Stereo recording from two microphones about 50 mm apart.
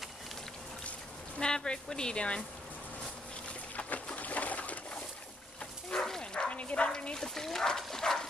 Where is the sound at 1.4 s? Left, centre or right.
Centre.